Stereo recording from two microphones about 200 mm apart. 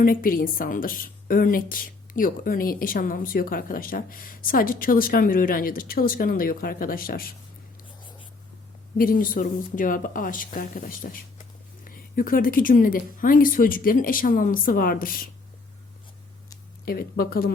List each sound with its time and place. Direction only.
0.0 s a woman's voice: 45° left (ahead or behind)
9.0 s a woman's voice: 45° left (ahead or behind)
16.8 s a woman's voice: 50° left (ahead or behind)